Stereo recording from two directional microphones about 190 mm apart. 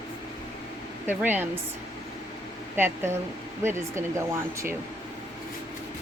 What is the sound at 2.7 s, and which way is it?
Speech, 10° right (ahead or behind).